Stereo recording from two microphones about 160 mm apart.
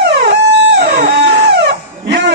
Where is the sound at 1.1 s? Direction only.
90° right.